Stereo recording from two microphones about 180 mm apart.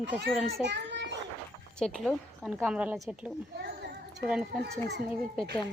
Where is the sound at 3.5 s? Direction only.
65° right (ahead or behind).